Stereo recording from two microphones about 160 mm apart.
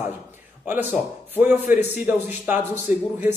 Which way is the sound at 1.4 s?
15° right (ahead or behind).